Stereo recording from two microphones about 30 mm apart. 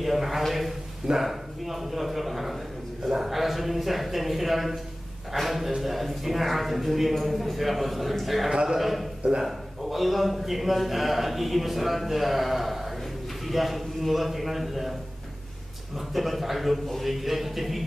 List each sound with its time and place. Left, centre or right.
0.0 s a man's voice: centre
3.1 s a sound: centre
3.3 s a man's voice: centre
16.1 s a man's voice: centre